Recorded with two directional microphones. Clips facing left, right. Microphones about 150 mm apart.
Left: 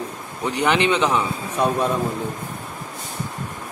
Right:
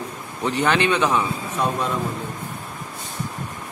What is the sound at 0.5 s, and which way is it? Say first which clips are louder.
A man's voice: left 1 dB; 15° left (ahead or behind).